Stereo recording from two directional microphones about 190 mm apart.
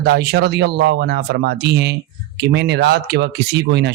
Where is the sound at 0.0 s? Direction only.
55° right (ahead or behind).